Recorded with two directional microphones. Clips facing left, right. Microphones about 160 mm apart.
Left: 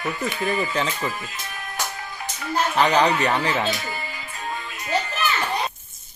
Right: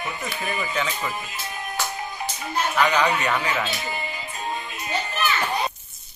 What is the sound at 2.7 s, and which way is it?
Speech, 35° left (ahead or behind).